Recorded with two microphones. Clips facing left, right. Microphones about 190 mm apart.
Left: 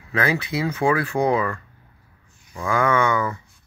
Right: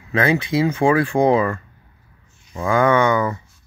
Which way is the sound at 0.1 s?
30° right (ahead or behind).